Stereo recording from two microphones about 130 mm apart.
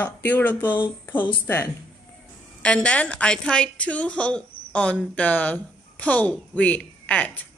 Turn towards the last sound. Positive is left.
turn(degrees=10)  # may be behind; listen again after turning